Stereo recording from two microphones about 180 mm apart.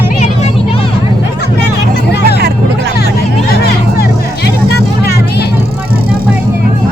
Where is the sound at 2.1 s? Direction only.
65° left (ahead or behind).